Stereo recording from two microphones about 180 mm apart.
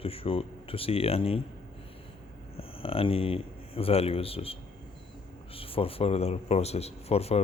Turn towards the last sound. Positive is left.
turn(degrees=35)  # may be behind; listen again after turning